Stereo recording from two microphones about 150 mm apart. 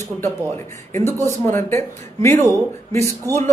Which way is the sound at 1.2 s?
15° left (ahead or behind).